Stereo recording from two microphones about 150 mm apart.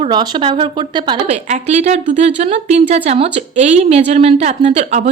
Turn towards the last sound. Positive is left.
turn(degrees=-45)  # may be behind; listen again after turning